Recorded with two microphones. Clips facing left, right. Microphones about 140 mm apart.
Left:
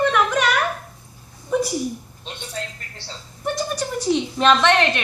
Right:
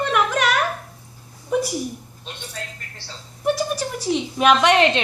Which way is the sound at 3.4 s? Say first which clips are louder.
Right 3 dB; 5° right (ahead or behind).